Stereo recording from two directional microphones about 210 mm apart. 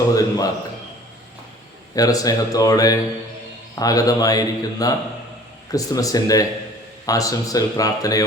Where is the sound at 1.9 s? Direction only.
15° left (ahead or behind).